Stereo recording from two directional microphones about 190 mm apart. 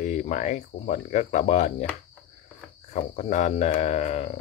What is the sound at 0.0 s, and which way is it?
Speech, 40° left (ahead or behind).